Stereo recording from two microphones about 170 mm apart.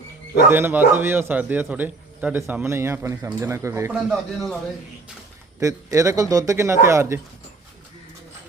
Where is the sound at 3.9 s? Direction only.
Centre (ahead or behind).